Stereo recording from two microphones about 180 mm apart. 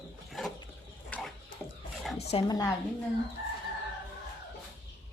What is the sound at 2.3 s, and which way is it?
Speech, 25° left (ahead or behind).